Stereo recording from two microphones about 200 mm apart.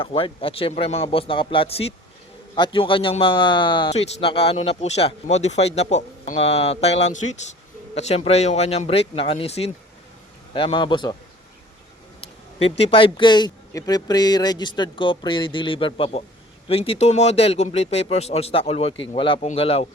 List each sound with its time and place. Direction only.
0.0 s speech: 25° left (ahead or behind)
12.5 s speech: 30° left (ahead or behind)